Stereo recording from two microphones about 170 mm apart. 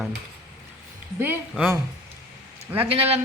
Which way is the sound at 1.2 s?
10° right (ahead or behind).